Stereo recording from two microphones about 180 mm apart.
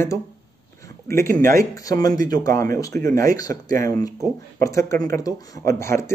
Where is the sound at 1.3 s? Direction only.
50° right (ahead or behind).